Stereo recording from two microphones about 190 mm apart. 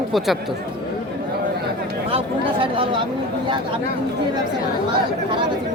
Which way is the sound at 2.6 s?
25° right (ahead or behind).